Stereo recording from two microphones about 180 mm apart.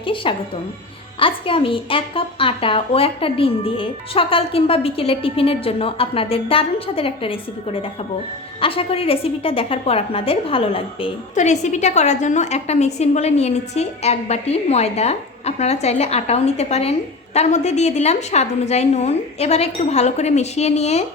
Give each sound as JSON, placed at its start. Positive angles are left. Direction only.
{"t": 0.0, "sound": "a woman's voice", "side_deg": 30}